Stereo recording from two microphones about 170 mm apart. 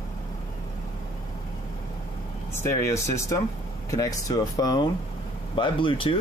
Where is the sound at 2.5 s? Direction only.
15° left (ahead or behind).